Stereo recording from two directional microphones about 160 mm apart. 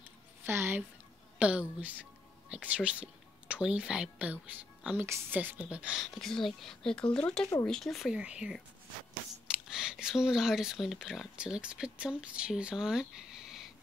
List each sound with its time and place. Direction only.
0.5 s speech: 15° right (ahead or behind)